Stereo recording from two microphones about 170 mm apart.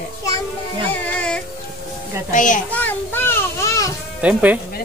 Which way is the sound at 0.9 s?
5° left (ahead or behind).